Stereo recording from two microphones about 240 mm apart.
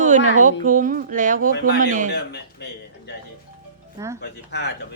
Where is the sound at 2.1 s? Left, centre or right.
Left.